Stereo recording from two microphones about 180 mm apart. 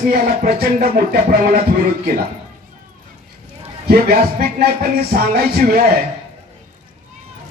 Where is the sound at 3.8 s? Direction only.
60° right (ahead or behind).